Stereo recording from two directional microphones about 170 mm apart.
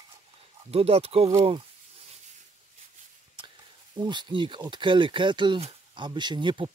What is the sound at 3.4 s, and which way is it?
Speech, 25° right (ahead or behind).